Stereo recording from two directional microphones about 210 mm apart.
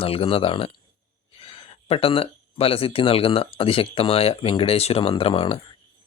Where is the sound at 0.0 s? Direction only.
25° left (ahead or behind).